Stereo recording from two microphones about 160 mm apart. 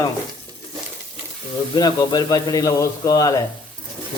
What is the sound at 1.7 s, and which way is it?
Speech, 25° left (ahead or behind).